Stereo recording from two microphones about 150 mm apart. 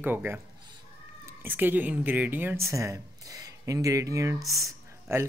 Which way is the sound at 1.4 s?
10° right (ahead or behind).